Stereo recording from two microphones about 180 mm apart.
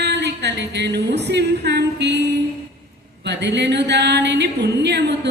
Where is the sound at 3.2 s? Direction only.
70° right (ahead or behind).